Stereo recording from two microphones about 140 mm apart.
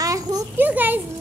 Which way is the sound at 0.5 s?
15° right (ahead or behind).